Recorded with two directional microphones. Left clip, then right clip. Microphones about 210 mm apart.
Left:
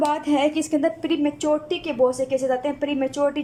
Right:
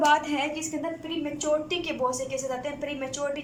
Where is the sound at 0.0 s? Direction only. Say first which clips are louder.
Left 2 dB; 25° left (ahead or behind).